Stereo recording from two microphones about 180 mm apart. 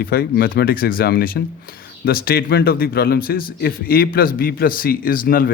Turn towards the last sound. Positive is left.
turn(degrees=55)  # may be behind; listen again after turning